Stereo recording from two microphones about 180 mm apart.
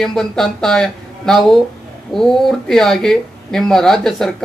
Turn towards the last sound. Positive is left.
turn(degrees=0)  # may be behind; listen again after turning